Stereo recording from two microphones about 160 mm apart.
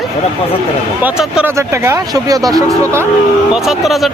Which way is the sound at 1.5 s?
15° right (ahead or behind).